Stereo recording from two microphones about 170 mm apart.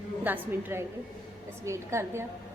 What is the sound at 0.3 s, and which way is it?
A woman's voice, 10° right (ahead or behind).